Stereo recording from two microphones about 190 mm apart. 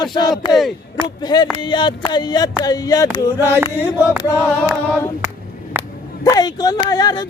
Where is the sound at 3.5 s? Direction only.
10° right (ahead or behind).